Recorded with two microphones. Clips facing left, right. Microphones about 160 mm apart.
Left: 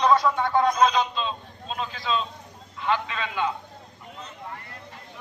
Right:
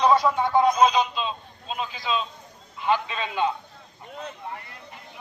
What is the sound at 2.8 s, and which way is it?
Speech, 20° right (ahead or behind).